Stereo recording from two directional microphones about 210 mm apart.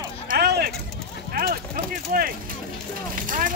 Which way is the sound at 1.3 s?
45° right (ahead or behind).